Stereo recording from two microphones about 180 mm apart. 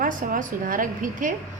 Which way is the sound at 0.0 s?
50° right (ahead or behind).